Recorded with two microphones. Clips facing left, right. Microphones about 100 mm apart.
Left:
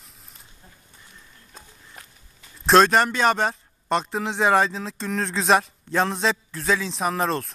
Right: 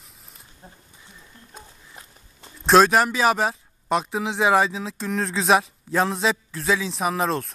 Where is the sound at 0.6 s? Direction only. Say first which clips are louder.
Right 8 dB; 30° right (ahead or behind).